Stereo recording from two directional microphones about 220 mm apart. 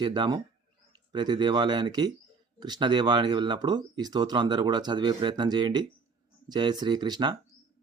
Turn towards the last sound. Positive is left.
turn(degrees=-20)  # may be behind; listen again after turning